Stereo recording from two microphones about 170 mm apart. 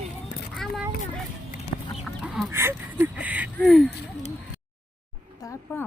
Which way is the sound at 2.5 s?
15° right (ahead or behind).